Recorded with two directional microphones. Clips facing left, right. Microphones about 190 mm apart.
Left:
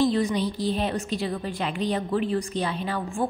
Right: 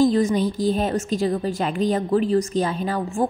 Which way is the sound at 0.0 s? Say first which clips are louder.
Right 5 dB; 45° right (ahead or behind).